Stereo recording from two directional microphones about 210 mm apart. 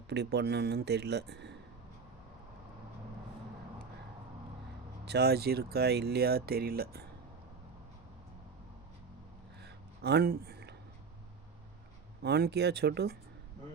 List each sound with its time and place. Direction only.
0.1 s speech: 55° right (ahead or behind)
5.0 s speech: 50° right (ahead or behind)
9.6 s a sound: 50° right (ahead or behind)
12.2 s speech: 50° right (ahead or behind)